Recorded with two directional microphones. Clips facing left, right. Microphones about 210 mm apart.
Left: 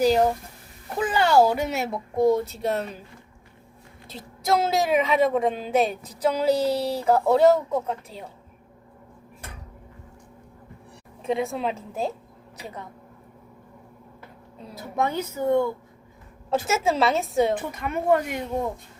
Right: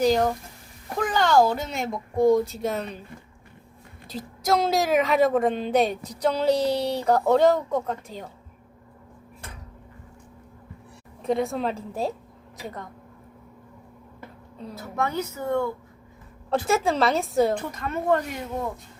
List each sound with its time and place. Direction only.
0.0 s a woman's voice: 10° left (ahead or behind)
4.1 s a woman's voice: centre (ahead or behind)
11.2 s a woman's voice: centre (ahead or behind)
14.8 s speech: 15° left (ahead or behind)
16.5 s a woman's voice: centre (ahead or behind)